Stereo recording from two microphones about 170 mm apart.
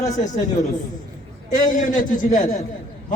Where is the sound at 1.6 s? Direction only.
50° left (ahead or behind).